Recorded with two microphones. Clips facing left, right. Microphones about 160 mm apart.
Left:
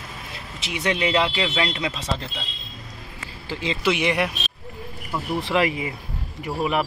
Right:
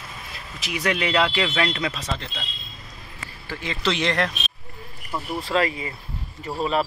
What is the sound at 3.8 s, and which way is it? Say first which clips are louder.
Speech: left 1 dB; 10° left (ahead or behind).